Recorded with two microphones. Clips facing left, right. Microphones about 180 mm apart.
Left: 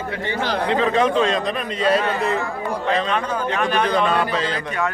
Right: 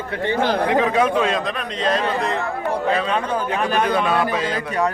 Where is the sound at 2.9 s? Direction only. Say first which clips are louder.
Right 1 dB; 10° right (ahead or behind).